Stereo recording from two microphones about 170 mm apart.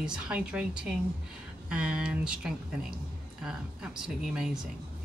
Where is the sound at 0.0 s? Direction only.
5° right (ahead or behind).